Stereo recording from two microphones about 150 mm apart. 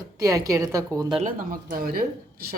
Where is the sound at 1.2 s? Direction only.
65° right (ahead or behind).